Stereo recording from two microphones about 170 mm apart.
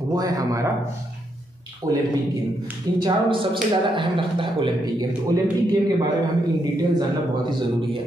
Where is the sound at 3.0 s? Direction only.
30° right (ahead or behind).